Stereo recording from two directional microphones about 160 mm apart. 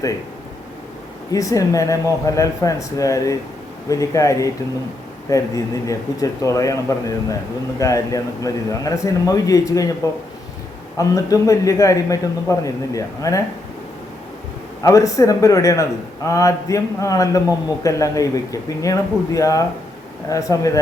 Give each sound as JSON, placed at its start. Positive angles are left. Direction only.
{"t": 1.3, "sound": "a man's voice", "side_deg": 20}
{"t": 10.9, "sound": "a man's voice", "side_deg": 20}
{"t": 14.8, "sound": "a man's voice", "side_deg": 20}